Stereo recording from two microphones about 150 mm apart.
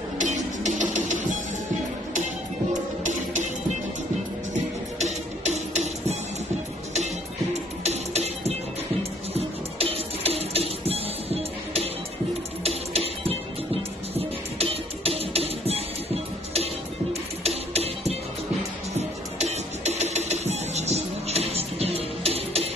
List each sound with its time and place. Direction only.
0.2 s music: 55° right (ahead or behind)
4.9 s music: 50° right (ahead or behind)
7.8 s music: 45° right (ahead or behind)
17.1 s music: 45° right (ahead or behind)